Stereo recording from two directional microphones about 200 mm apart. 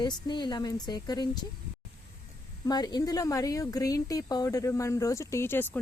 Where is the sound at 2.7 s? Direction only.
20° left (ahead or behind).